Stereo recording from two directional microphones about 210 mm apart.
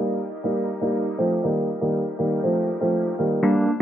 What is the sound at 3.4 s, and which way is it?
Music, centre (ahead or behind).